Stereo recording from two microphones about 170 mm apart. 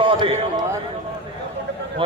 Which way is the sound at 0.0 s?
30° right (ahead or behind).